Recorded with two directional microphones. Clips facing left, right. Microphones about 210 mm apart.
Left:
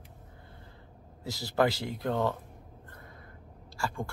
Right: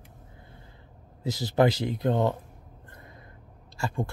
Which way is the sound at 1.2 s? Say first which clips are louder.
Right 5 dB; 20° right (ahead or behind).